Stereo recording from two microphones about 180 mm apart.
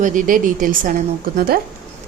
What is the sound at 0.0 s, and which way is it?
A woman's voice, 45° right (ahead or behind).